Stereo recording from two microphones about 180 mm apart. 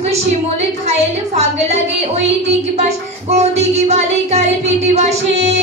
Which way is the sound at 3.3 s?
35° right (ahead or behind).